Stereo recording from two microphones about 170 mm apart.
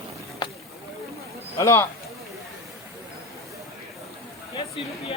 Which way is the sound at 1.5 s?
15° left (ahead or behind).